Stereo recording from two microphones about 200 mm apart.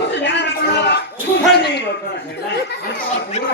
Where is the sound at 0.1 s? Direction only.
60° left (ahead or behind).